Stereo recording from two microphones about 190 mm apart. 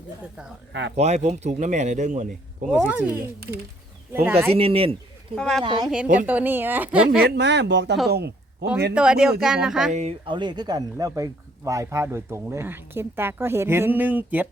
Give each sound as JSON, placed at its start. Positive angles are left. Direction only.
{"t": 0.7, "sound": "speech", "side_deg": -70}
{"t": 0.9, "sound": "speech", "side_deg": -35}
{"t": 2.8, "sound": "speech", "side_deg": -10}
{"t": 4.5, "sound": "speech", "side_deg": -30}
{"t": 5.3, "sound": "speech", "side_deg": 5}
{"t": 5.6, "sound": "speech", "side_deg": -25}
{"t": 5.9, "sound": "speech", "side_deg": -5}
{"t": 7.2, "sound": "speech", "side_deg": -60}
{"t": 9.0, "sound": "speech", "side_deg": -5}
{"t": 9.9, "sound": "speech", "side_deg": -35}